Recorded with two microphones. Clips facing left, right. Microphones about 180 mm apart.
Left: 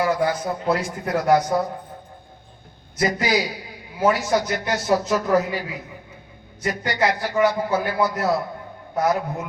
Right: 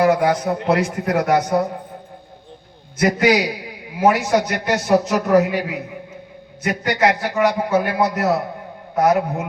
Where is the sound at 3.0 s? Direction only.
70° right (ahead or behind).